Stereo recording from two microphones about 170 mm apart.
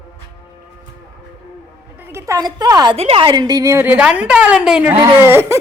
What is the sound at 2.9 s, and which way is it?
A woman's voice, 35° right (ahead or behind).